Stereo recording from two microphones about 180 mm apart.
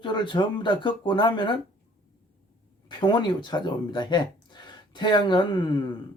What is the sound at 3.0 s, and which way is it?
Speech, 25° left (ahead or behind).